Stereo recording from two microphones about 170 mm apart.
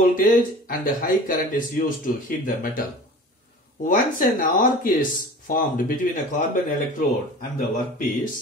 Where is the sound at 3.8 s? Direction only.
55° left (ahead or behind).